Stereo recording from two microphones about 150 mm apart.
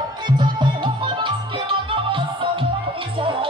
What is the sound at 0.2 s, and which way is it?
Music, 30° right (ahead or behind).